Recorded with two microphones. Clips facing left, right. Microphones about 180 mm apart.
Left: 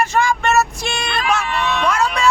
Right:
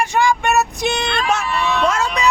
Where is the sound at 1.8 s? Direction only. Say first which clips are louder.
Left 1 dB; 25° right (ahead or behind).